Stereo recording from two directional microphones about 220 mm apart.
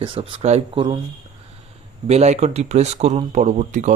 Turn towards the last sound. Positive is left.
turn(degrees=-35)  # may be behind; listen again after turning